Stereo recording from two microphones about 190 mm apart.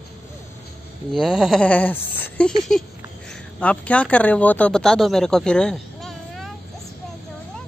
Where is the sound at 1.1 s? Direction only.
Centre (ahead or behind).